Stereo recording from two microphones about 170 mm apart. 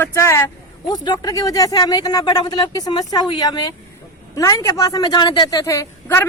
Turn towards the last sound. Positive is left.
turn(degrees=15)  # may be behind; listen again after turning